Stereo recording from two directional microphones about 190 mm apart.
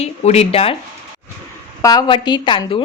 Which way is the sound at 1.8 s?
20° left (ahead or behind).